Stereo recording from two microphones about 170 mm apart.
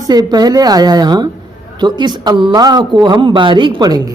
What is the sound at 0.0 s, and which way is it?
A man's voice, 20° right (ahead or behind).